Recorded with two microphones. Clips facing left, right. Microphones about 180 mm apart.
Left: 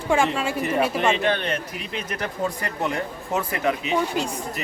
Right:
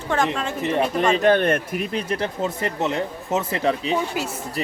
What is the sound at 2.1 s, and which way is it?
Speech, 25° right (ahead or behind).